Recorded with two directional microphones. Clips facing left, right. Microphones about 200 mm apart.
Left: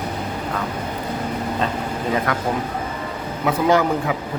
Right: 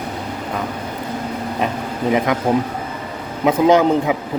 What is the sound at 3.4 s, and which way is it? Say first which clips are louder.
Speech: right 5 dB; 20° right (ahead or behind).